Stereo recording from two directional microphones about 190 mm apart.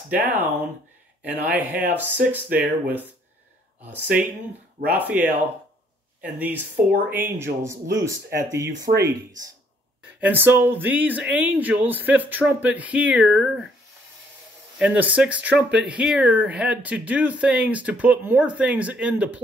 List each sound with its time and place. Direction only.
0.3 s speech: 10° right (ahead or behind)
7.1 s speech: 10° right (ahead or behind)
8.7 s speech: 45° right (ahead or behind)
9.0 s speech: 20° right (ahead or behind)
14.8 s speech: 5° right (ahead or behind)